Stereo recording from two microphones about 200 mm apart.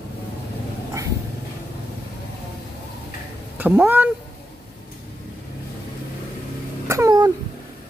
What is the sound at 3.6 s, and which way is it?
Speech, 10° right (ahead or behind).